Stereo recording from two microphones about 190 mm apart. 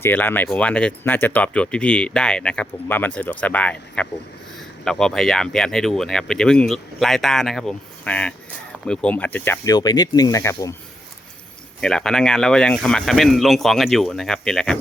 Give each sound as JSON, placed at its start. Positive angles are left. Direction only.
{"t": 0.0, "sound": "speech", "side_deg": 10}
{"t": 11.8, "sound": "speech", "side_deg": 5}